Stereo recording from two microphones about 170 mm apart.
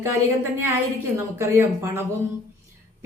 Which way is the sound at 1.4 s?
15° right (ahead or behind).